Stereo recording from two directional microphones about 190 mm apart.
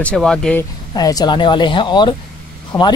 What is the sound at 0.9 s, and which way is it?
Speech, 20° left (ahead or behind).